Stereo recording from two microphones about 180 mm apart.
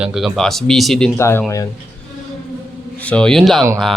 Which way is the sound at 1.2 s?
15° left (ahead or behind).